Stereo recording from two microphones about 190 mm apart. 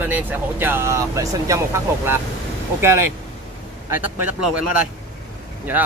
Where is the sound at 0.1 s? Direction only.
10° right (ahead or behind).